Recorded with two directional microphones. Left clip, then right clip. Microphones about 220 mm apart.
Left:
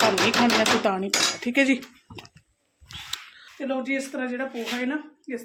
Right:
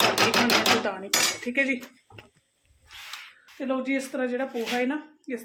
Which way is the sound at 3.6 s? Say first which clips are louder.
Left 1 dB; 10° right (ahead or behind).